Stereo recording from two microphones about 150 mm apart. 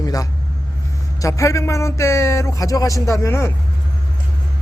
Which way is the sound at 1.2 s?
20° left (ahead or behind).